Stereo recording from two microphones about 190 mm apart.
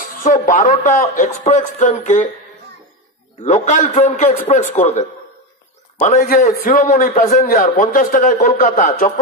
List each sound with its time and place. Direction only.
0.2 s a man's voice: 45° left (ahead or behind)
3.4 s a man's voice: 40° left (ahead or behind)